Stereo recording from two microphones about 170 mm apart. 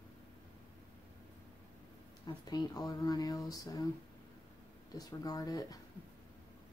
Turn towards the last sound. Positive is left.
turn(degrees=20)  # may be behind; listen again after turning